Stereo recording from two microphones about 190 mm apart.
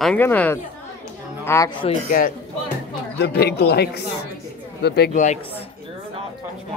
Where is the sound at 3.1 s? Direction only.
60° left (ahead or behind).